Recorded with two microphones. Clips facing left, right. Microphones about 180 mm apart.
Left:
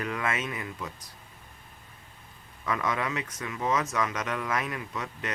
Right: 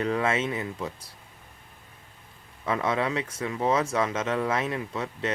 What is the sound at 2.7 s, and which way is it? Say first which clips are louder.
Speech: right 4 dB; 30° right (ahead or behind).